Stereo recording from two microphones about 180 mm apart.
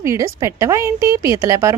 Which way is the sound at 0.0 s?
15° right (ahead or behind).